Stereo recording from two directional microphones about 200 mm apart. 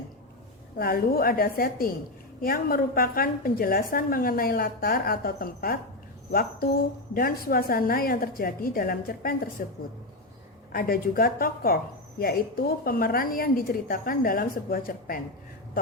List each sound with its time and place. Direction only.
0.8 s a woman's voice: 45° left (ahead or behind)
7.1 s a woman's voice: 45° left (ahead or behind)
10.7 s a woman's voice: 45° left (ahead or behind)